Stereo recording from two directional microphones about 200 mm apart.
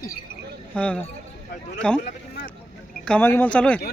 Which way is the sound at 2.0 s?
50° left (ahead or behind).